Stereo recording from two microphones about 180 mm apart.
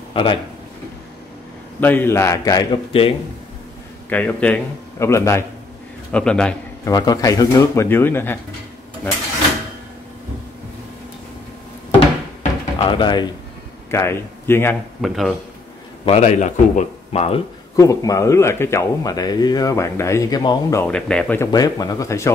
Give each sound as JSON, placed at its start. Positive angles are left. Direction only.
{"t": 0.1, "sound": "speech", "side_deg": 30}
{"t": 1.8, "sound": "speech", "side_deg": 10}
{"t": 2.9, "sound": "speech", "side_deg": 30}
{"t": 4.1, "sound": "speech", "side_deg": 5}
{"t": 6.1, "sound": "speech", "side_deg": 5}
{"t": 6.8, "sound": "speech", "side_deg": 20}
{"t": 12.7, "sound": "speech", "side_deg": 25}
{"t": 13.8, "sound": "a man's voice", "side_deg": 15}
{"t": 15.0, "sound": "speech", "side_deg": 0}
{"t": 16.1, "sound": "speech", "side_deg": 40}
{"t": 17.7, "sound": "speech", "side_deg": 20}
{"t": 20.9, "sound": "speech", "side_deg": 5}
{"t": 21.5, "sound": "speech", "side_deg": 20}